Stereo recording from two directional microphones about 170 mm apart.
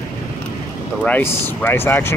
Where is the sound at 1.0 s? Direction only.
10° left (ahead or behind).